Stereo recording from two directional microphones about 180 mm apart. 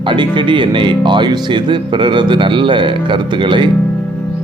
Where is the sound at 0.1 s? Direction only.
25° right (ahead or behind).